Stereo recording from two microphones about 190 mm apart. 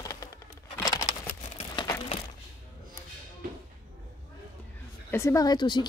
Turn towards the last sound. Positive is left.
turn(degrees=25)  # may be behind; listen again after turning